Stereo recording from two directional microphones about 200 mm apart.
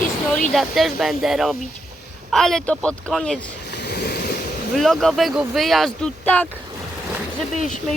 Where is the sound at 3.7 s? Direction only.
55° left (ahead or behind).